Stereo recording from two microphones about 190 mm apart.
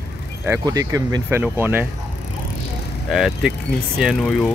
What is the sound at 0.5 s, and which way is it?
Speech, 15° right (ahead or behind).